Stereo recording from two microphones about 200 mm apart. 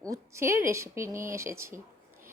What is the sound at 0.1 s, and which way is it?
A woman's voice, 15° right (ahead or behind).